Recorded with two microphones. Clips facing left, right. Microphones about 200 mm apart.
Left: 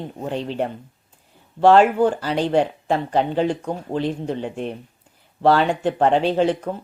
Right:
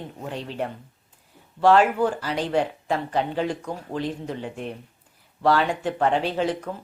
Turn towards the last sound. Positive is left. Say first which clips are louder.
# left 6 dB
turn(degrees=30)  # may be behind; listen again after turning